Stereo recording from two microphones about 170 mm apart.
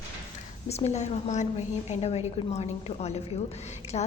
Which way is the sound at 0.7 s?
40° left (ahead or behind).